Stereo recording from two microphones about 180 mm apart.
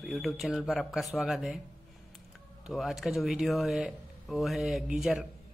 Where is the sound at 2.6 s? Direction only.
Centre (ahead or behind).